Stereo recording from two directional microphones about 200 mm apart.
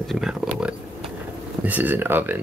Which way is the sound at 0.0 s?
Centre (ahead or behind).